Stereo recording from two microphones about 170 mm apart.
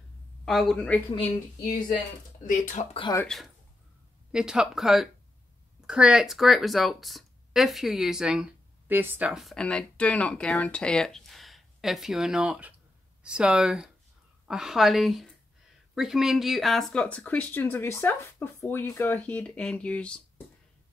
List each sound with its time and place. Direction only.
0.5 s speech: centre (ahead or behind)
2.4 s speech: 50° left (ahead or behind)
2.9 s speech: 30° left (ahead or behind)
3.3 s speech: centre (ahead or behind)